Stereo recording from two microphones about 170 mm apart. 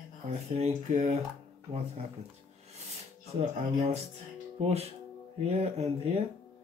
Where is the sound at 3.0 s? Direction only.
40° right (ahead or behind).